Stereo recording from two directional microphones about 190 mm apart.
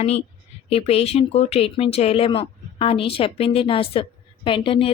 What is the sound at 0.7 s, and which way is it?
A woman's voice, 30° left (ahead or behind).